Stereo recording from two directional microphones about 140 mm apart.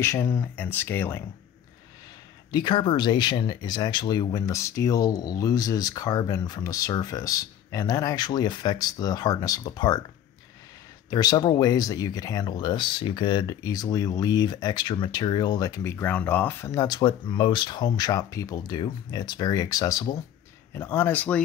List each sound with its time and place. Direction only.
0.0 s speech: 20° left (ahead or behind)
2.5 s speech: 35° left (ahead or behind)
11.1 s speech: 25° left (ahead or behind); by 21.4 s 10° left (ahead or behind)